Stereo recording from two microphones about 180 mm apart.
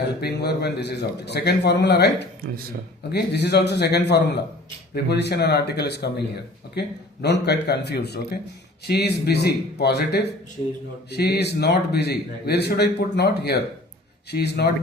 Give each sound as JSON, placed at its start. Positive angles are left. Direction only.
{"t": 0.2, "sound": "a man's voice", "side_deg": 65}